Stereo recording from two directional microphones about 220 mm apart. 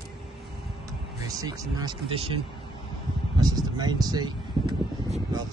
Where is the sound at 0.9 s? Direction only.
15° right (ahead or behind).